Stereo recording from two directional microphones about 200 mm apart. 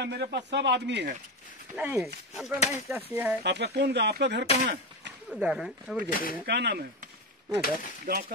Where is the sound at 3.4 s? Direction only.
55° right (ahead or behind).